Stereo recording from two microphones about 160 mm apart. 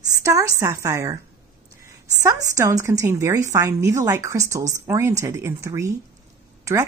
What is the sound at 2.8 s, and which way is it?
A woman's voice, 20° right (ahead or behind).